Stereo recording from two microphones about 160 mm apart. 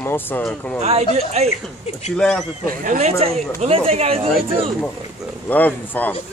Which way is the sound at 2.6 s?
60° right (ahead or behind).